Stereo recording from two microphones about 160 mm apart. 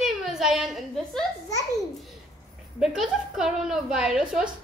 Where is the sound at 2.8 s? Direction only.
5° right (ahead or behind).